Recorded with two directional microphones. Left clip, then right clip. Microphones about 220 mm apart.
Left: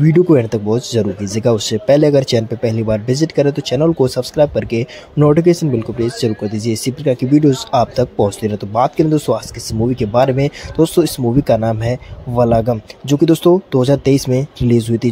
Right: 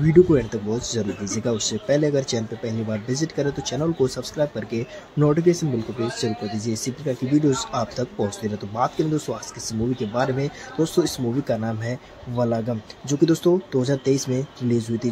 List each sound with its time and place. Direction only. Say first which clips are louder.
0.0 s speech: left 5 dB; 30° left (ahead or behind)